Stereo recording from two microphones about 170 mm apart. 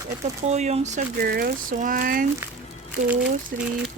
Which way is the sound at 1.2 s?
65° right (ahead or behind).